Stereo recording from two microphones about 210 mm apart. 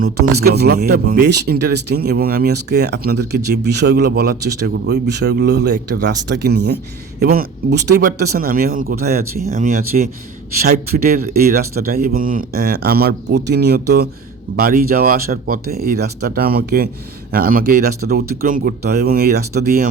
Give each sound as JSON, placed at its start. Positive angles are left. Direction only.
{"t": 0.0, "sound": "speech", "side_deg": -50}